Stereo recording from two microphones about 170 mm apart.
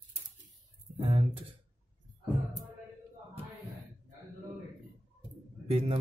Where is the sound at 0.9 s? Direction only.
30° right (ahead or behind).